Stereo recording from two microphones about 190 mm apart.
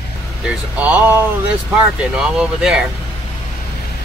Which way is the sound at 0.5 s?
5° right (ahead or behind).